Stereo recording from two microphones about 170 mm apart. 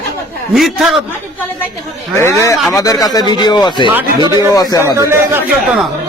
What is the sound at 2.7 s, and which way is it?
Speech, 20° left (ahead or behind).